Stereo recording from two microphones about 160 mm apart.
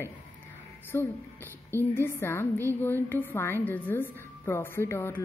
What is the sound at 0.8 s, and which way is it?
A woman's voice, 10° left (ahead or behind).